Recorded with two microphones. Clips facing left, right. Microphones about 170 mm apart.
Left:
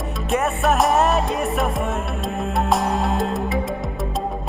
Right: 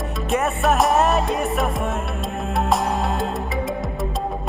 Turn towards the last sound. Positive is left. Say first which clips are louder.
# even
turn(degrees=0)  # may be behind; listen again after turning